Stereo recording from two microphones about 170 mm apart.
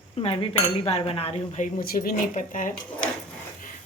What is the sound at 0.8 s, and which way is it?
Speech, 35° left (ahead or behind).